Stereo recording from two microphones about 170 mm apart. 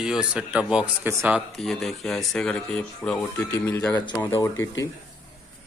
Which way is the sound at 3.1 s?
15° left (ahead or behind).